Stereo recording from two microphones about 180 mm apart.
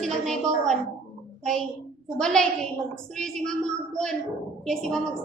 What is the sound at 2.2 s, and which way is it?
A woman's voice, 5° left (ahead or behind).